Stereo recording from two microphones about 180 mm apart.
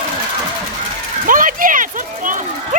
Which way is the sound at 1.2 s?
50° right (ahead or behind).